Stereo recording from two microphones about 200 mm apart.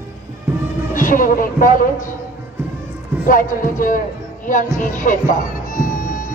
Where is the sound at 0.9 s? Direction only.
40° left (ahead or behind).